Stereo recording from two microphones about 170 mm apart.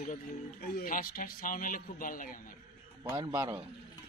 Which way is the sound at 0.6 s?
55° left (ahead or behind).